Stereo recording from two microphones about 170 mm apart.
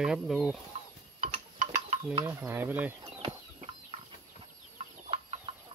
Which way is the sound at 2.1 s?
15° right (ahead or behind).